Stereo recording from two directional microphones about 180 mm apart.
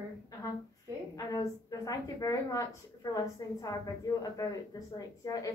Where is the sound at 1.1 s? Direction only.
20° left (ahead or behind).